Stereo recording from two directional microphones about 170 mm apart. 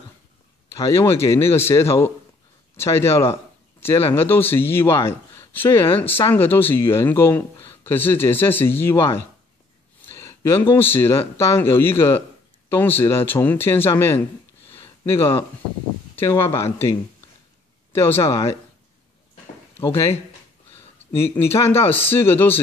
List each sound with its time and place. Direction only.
0.7 s a man's voice: 15° left (ahead or behind)
14.7 s a sound: 15° left (ahead or behind)
16.3 s a man's voice: 15° left (ahead or behind)
19.8 s a man's voice: 15° left (ahead or behind)
21.4 s a man's voice: 15° left (ahead or behind)